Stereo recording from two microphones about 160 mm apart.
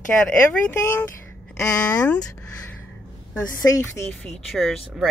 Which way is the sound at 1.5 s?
10° left (ahead or behind).